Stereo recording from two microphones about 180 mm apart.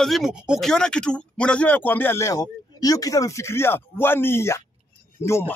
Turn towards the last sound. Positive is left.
turn(degrees=15)  # may be behind; listen again after turning